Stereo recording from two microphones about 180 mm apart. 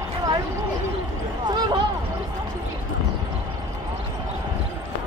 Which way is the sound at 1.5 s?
25° right (ahead or behind).